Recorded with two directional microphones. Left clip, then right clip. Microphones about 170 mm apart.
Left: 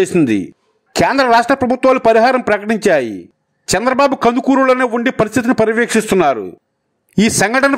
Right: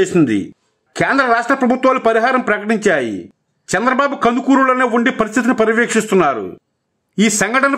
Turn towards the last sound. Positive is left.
turn(degrees=35)  # may be behind; listen again after turning